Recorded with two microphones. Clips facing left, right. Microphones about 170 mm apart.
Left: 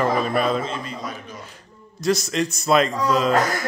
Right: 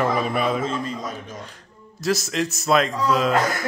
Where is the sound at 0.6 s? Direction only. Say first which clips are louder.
Right 3 dB; 45° right (ahead or behind).